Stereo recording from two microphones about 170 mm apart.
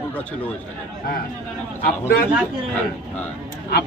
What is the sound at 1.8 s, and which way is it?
Speech, 65° left (ahead or behind).